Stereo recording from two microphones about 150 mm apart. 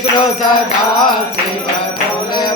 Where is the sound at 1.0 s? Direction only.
30° left (ahead or behind).